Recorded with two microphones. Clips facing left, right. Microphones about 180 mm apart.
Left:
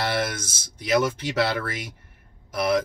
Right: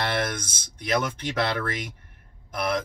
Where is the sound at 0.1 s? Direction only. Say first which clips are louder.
Left 1 dB; 5° left (ahead or behind).